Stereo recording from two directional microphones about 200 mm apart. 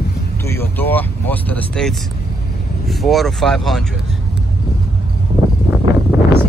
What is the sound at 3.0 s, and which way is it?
Speech, centre (ahead or behind).